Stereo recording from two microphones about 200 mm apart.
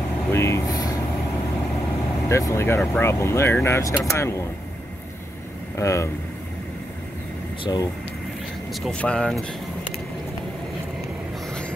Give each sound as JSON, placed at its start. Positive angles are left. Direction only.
{"t": 0.3, "sound": "air conditioning", "side_deg": 15}
{"t": 2.2, "sound": "speech", "side_deg": 15}
{"t": 5.8, "sound": "speech", "side_deg": 15}
{"t": 7.6, "sound": "speech", "side_deg": 20}
{"t": 8.8, "sound": "speech", "side_deg": 5}